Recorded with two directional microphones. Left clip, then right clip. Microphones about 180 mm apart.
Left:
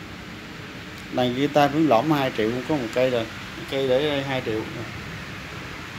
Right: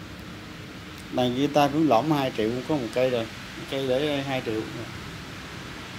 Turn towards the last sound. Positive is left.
turn(degrees=5)  # may be behind; listen again after turning